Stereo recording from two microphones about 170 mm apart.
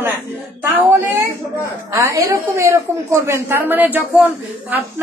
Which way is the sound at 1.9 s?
20° right (ahead or behind).